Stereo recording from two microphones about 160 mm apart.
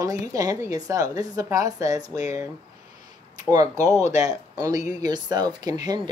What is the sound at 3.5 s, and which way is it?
A woman's voice, 20° right (ahead or behind).